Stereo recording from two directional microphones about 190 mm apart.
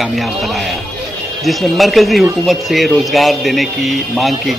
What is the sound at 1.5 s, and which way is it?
A man's voice, centre (ahead or behind).